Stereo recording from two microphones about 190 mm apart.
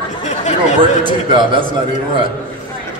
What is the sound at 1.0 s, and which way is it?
Speech, 25° right (ahead or behind).